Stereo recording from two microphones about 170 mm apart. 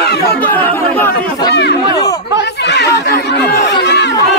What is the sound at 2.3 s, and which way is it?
Speech, 85° left.